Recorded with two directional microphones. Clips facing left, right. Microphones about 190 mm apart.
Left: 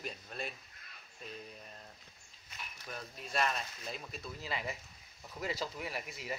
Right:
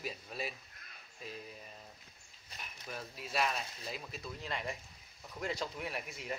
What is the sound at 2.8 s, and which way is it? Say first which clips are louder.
Speech: right 1 dB; 5° right (ahead or behind).